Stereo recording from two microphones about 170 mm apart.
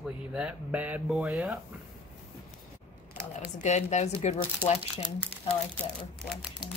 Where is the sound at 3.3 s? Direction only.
40° left (ahead or behind).